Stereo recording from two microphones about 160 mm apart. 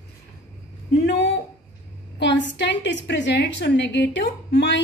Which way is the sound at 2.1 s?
90° left.